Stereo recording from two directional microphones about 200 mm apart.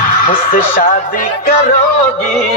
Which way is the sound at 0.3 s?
45° left (ahead or behind).